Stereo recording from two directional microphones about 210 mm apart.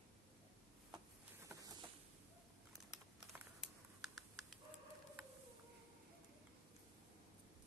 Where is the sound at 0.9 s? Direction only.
15° right (ahead or behind).